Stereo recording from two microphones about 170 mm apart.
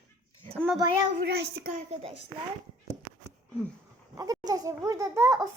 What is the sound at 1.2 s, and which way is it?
Child singing, 70° right (ahead or behind).